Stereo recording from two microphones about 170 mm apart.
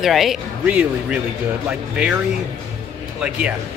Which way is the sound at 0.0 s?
Centre (ahead or behind).